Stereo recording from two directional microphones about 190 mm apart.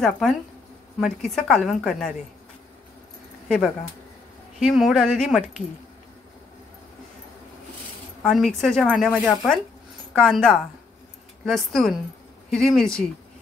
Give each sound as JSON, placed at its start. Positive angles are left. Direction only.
{"t": 0.0, "sound": "speech", "side_deg": 0}
{"t": 3.4, "sound": "speech", "side_deg": 0}
{"t": 8.2, "sound": "speech", "side_deg": 0}